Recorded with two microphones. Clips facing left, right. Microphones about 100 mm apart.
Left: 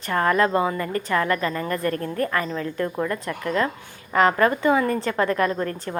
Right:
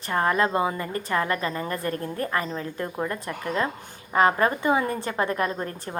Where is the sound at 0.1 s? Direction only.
25° right (ahead or behind).